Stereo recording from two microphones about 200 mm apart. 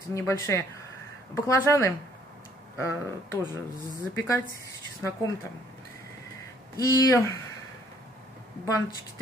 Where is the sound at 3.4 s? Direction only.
20° right (ahead or behind).